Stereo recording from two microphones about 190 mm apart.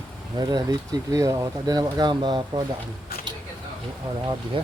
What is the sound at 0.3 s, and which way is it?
Speech, 20° right (ahead or behind).